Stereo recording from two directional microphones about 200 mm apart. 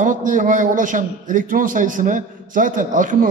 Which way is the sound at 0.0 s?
40° right (ahead or behind).